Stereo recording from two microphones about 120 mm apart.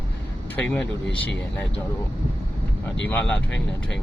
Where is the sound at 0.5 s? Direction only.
15° left (ahead or behind).